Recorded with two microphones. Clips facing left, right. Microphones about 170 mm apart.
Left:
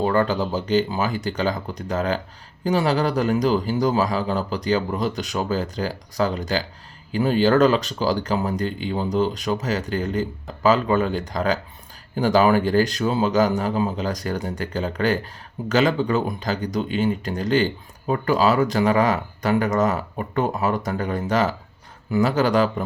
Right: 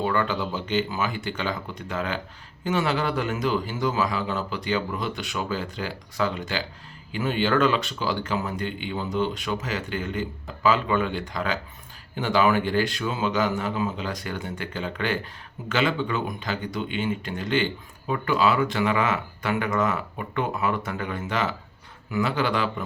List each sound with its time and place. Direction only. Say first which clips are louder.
0.0 s speech: left 5 dB; 40° left (ahead or behind)